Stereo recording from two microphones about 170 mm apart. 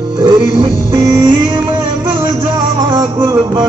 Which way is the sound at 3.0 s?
20° right (ahead or behind).